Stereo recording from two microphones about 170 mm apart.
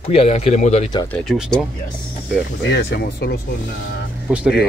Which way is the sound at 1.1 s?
5° left (ahead or behind).